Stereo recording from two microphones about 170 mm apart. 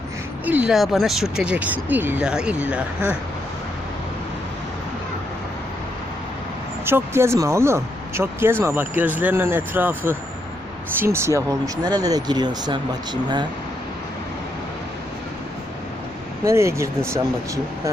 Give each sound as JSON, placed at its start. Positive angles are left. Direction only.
{"t": 0.4, "sound": "speech", "side_deg": -10}
{"t": 6.8, "sound": "speech", "side_deg": -15}
{"t": 16.4, "sound": "speech", "side_deg": -15}